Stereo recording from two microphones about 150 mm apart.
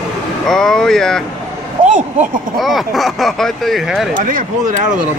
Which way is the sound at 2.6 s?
Centre (ahead or behind).